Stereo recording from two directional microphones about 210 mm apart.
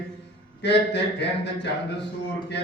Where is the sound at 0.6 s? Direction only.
55° left (ahead or behind).